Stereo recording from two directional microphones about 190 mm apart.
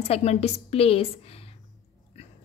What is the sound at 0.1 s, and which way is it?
A woman's voice, 35° left (ahead or behind).